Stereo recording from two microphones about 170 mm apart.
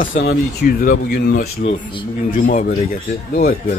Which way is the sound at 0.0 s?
60° left (ahead or behind).